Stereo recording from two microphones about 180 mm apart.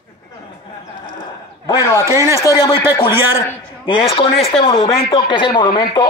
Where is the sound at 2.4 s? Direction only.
20° left (ahead or behind).